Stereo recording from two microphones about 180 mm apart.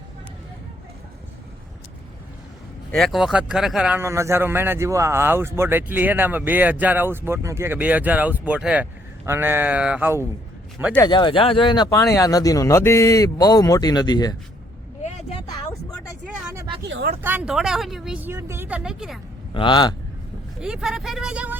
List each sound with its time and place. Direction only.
2.9 s speech: centre (ahead or behind)
11.0 s speech: 25° left (ahead or behind)
16.2 s vehicle: 5° right (ahead or behind)
16.9 s a sound: 60° right (ahead or behind)
17.2 s a woman's voice: 10° right (ahead or behind)
19.5 s speech: 25° left (ahead or behind)
20.6 s a woman's voice: 5° right (ahead or behind)